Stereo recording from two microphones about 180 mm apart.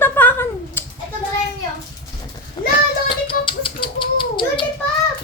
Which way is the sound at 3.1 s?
30° left (ahead or behind).